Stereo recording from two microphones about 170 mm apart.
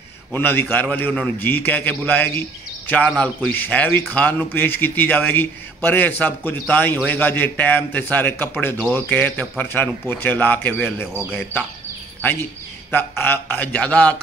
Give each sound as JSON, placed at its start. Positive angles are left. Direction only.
{"t": 0.3, "sound": "a man's voice", "side_deg": 10}
{"t": 12.2, "sound": "a man's voice", "side_deg": 10}